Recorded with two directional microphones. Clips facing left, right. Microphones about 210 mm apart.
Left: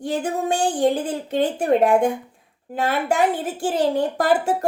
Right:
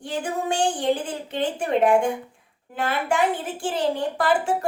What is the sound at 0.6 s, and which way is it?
A woman's voice, 40° left (ahead or behind).